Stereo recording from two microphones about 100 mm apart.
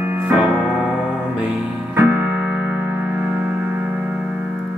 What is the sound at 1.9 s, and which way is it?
Music, 20° right (ahead or behind).